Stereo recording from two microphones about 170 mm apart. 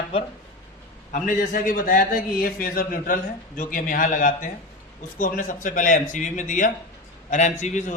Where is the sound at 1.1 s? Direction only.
55° left (ahead or behind).